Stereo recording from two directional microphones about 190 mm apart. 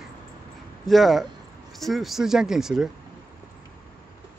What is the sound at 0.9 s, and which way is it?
Speech, centre (ahead or behind).